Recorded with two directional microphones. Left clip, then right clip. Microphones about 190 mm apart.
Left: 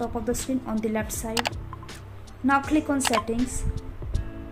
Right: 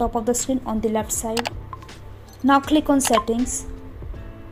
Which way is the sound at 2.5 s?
30° right (ahead or behind).